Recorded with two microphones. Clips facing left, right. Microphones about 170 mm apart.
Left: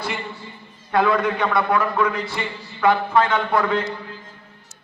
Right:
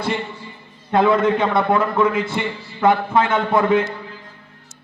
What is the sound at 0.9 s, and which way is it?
A man's voice, 25° right (ahead or behind).